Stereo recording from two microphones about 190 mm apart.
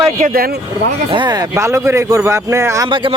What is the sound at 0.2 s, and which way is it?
Speech, 50° right (ahead or behind).